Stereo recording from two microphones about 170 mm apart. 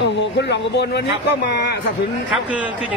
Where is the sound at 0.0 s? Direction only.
90° left.